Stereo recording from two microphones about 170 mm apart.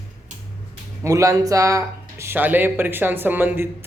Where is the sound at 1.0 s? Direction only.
20° right (ahead or behind).